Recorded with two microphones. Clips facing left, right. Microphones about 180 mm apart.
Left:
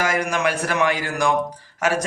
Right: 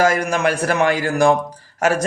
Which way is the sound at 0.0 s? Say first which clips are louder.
Right 4 dB; 35° right (ahead or behind).